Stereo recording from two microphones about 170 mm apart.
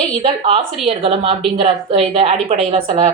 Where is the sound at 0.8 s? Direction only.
35° right (ahead or behind).